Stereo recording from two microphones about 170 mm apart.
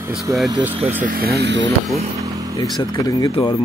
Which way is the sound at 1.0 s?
55° right (ahead or behind).